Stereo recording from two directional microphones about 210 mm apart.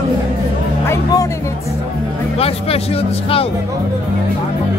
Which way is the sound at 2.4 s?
30° left (ahead or behind).